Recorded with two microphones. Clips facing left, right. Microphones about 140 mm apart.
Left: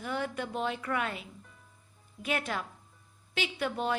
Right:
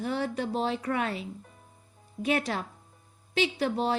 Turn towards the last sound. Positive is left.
turn(degrees=-35)  # may be behind; listen again after turning